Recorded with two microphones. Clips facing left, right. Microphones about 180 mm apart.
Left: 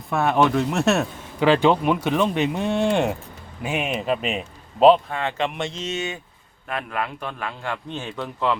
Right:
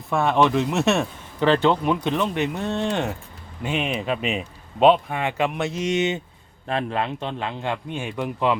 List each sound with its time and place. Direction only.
0.1 s speech: centre (ahead or behind)
1.4 s speech: 10° left (ahead or behind)
5.0 s a man's voice: 15° right (ahead or behind)